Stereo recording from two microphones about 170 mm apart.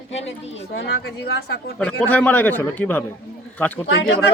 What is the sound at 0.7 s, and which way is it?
Speech, 80° left.